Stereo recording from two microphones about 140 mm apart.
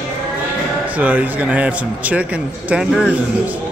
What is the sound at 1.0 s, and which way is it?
A man's voice, 10° right (ahead or behind).